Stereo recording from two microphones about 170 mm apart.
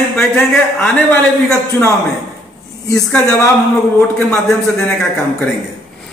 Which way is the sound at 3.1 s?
15° left (ahead or behind).